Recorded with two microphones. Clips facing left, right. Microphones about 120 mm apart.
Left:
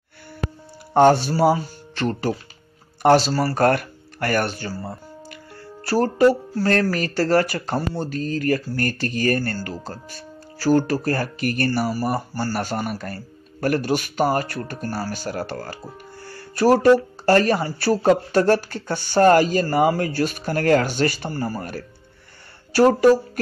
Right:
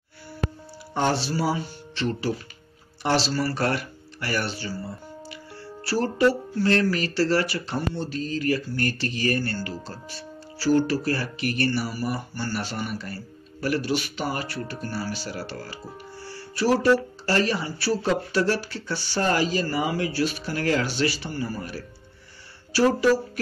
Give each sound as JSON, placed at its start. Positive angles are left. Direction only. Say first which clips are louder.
{"t": 0.9, "sound": "speech", "louder": "left 9 dB", "side_deg": 50}